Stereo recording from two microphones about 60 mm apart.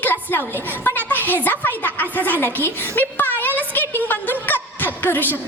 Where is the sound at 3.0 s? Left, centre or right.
Left.